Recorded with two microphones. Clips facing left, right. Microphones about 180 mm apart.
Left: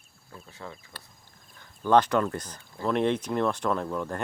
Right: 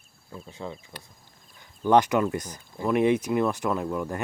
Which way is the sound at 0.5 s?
20° right (ahead or behind).